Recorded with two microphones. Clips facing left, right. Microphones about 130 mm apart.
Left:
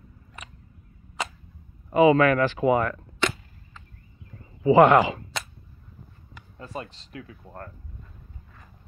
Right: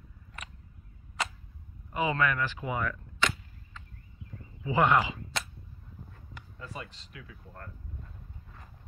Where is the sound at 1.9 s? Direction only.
90° left; by 3.3 s 70° left (ahead or behind).